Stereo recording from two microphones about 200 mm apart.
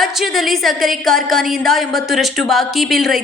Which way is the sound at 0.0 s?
Centre (ahead or behind).